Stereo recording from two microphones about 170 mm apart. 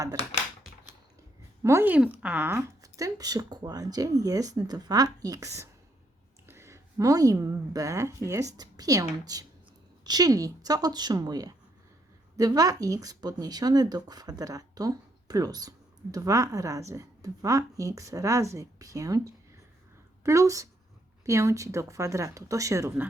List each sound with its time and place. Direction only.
1.6 s a woman's voice: 15° right (ahead or behind)